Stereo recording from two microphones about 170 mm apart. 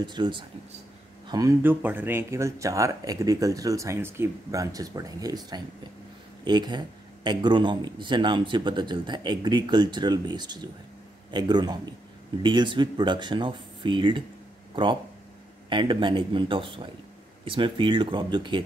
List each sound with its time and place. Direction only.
0.0 s speech: 25° right (ahead or behind)